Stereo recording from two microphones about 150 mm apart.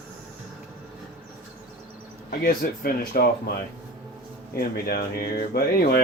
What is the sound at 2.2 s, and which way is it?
Speech, 75° left (ahead or behind).